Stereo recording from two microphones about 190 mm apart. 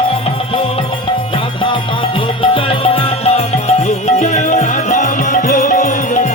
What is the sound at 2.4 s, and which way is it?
Music, 30° left (ahead or behind).